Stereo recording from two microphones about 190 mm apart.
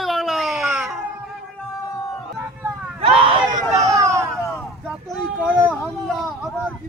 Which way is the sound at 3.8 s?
15° right (ahead or behind).